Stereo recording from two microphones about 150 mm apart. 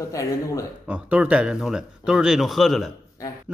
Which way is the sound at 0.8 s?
10° right (ahead or behind).